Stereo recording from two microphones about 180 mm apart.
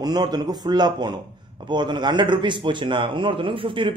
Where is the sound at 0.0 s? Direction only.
20° right (ahead or behind).